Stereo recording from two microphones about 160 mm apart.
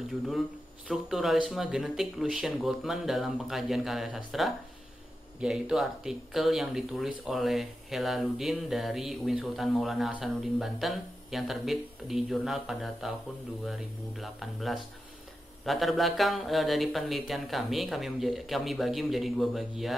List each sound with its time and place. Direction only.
0.8 s speech: centre (ahead or behind)